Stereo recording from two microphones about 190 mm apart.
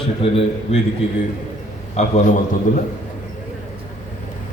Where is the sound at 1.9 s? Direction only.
40° left (ahead or behind).